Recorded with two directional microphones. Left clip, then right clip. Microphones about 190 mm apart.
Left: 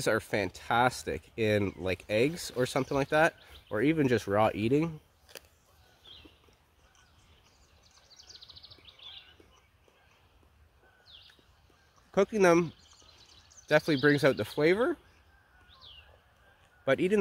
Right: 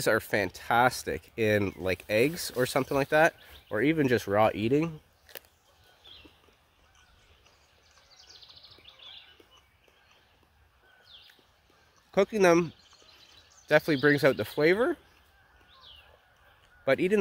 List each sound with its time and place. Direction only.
0.0 s speech: 15° right (ahead or behind)
8.2 s a sound: 55° left (ahead or behind)
12.1 s speech: 10° right (ahead or behind)
16.8 s speech: 10° right (ahead or behind)